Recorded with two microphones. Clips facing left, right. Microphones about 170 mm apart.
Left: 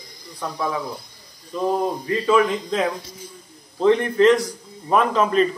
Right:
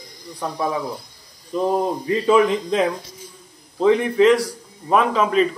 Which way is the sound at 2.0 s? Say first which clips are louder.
Right 3 dB; 15° right (ahead or behind).